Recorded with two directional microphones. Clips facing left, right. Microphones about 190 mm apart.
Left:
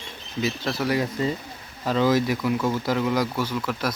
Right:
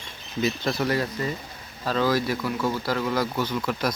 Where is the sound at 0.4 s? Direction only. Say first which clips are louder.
Right 1 dB; 5° left (ahead or behind).